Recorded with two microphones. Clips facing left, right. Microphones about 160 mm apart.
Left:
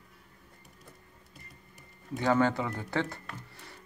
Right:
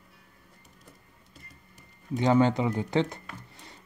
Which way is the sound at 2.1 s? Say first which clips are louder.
Right 4 dB; 20° right (ahead or behind).